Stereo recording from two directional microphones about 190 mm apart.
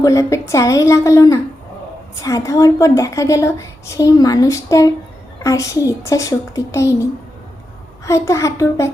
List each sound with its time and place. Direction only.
0.0 s a woman's voice: 15° left (ahead or behind)